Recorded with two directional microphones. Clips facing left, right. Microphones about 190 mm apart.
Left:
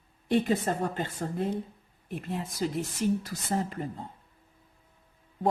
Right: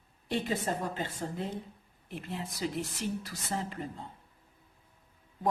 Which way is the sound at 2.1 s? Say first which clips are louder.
Left 4 dB; 50° left (ahead or behind).